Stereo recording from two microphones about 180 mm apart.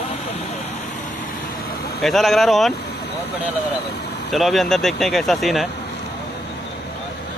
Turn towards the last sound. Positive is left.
turn(degrees=0)  # may be behind; listen again after turning